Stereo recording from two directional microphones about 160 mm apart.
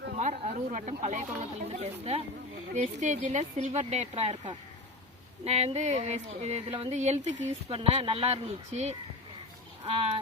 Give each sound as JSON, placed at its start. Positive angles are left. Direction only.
{"t": 0.2, "sound": "a woman's voice", "side_deg": -50}